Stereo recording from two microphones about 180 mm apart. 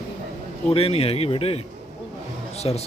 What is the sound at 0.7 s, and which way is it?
Speech, 30° left (ahead or behind).